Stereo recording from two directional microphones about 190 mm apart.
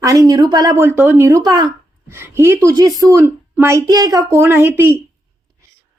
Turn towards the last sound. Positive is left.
turn(degrees=-10)  # may be behind; listen again after turning